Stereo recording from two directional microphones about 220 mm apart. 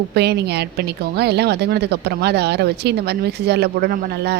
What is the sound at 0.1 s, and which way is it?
A woman's voice, 50° right (ahead or behind).